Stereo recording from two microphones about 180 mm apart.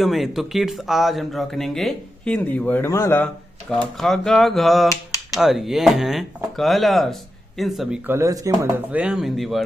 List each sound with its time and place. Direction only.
0.0 s speech: centre (ahead or behind)
3.8 s speech: centre (ahead or behind)
8.1 s speech: 15° right (ahead or behind)
8.9 s speech: 5° right (ahead or behind)